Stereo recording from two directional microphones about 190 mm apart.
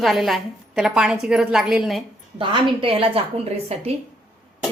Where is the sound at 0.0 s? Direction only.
Centre (ahead or behind).